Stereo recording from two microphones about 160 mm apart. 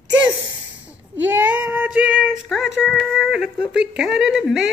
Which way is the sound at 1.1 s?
10° right (ahead or behind).